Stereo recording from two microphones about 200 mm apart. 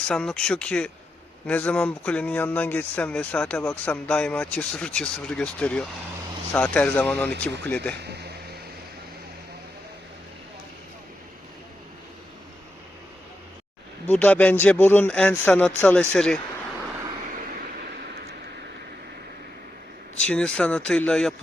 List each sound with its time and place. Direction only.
0.1 s speech: 5° left (ahead or behind)
8.0 s vehicle: 55° right (ahead or behind)
14.1 s speech: 10° left (ahead or behind)
20.2 s speech: 5° left (ahead or behind)